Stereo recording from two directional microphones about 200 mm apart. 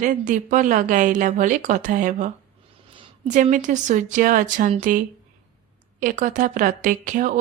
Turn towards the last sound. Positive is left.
turn(degrees=-40)  # may be behind; listen again after turning